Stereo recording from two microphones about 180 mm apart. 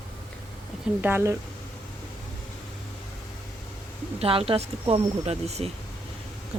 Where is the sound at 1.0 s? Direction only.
10° right (ahead or behind).